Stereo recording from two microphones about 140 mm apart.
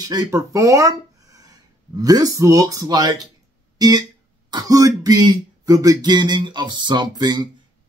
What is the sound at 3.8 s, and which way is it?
Music, 30° right (ahead or behind).